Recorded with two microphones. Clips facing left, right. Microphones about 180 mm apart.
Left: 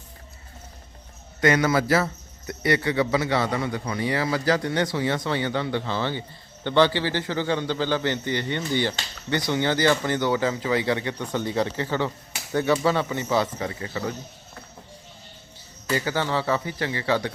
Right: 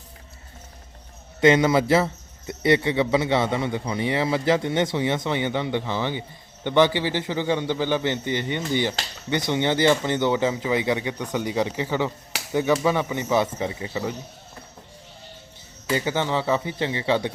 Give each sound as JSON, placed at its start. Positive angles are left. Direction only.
{"t": 1.4, "sound": "a man's voice", "side_deg": -20}
{"t": 15.9, "sound": "a man's voice", "side_deg": -20}